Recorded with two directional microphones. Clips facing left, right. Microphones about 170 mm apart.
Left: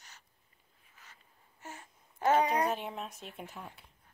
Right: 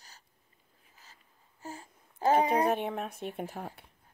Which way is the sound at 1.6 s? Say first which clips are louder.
Right 5 dB; 30° right (ahead or behind).